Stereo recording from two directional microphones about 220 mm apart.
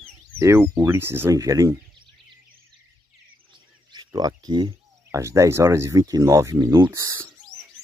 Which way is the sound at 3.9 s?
20° right (ahead or behind).